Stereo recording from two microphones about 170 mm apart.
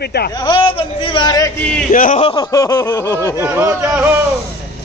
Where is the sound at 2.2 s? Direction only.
25° left (ahead or behind).